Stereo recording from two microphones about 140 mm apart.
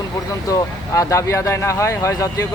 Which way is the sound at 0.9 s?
20° left (ahead or behind).